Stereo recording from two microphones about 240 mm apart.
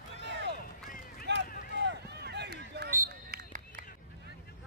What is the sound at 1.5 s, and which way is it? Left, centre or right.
Run, left.